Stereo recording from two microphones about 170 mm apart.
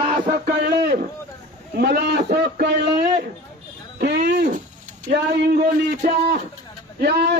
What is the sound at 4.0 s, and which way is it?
Speech, 70° right (ahead or behind).